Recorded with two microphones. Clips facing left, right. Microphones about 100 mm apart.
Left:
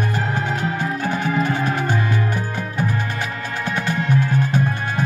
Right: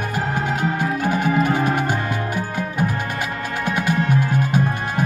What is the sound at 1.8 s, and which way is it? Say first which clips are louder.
Music: left 1 dB; 15° right (ahead or behind).